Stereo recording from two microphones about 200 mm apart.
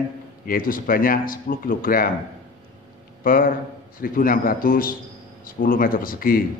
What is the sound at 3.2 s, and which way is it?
A man's voice, 45° left (ahead or behind).